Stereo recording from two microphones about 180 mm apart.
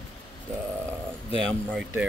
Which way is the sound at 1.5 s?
5° left (ahead or behind).